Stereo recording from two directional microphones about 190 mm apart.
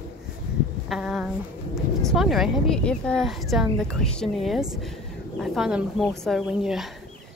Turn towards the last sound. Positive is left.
turn(degrees=0)  # may be behind; listen again after turning